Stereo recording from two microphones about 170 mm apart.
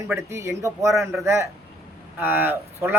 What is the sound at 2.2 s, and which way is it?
Speech, 10° right (ahead or behind).